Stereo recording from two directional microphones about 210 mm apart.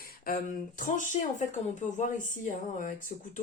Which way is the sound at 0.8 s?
40° left (ahead or behind).